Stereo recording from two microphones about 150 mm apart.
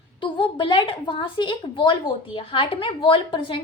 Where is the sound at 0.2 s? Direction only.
35° left (ahead or behind).